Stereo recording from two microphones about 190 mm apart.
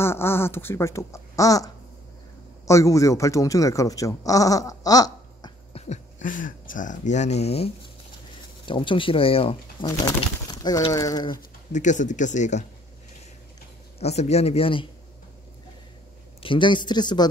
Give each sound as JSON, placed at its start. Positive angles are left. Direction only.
{"t": 0.0, "sound": "speech", "side_deg": 10}
{"t": 5.7, "sound": "speech", "side_deg": 35}
{"t": 9.8, "sound": "speech", "side_deg": 20}
{"t": 11.7, "sound": "speech", "side_deg": 40}
{"t": 13.9, "sound": "speech", "side_deg": 35}
{"t": 16.4, "sound": "speech", "side_deg": 25}